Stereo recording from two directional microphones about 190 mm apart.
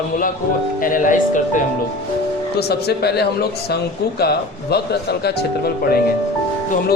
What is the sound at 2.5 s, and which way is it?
Speech, 55° left (ahead or behind).